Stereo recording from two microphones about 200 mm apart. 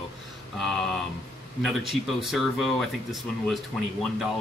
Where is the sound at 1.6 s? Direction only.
Centre (ahead or behind).